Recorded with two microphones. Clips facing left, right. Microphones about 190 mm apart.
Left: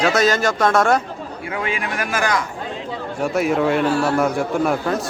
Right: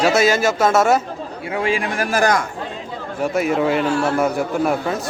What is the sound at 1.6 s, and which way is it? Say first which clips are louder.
Speech: right 4 dB; 30° right (ahead or behind).